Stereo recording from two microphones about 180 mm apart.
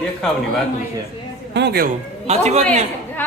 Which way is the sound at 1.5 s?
70° right (ahead or behind).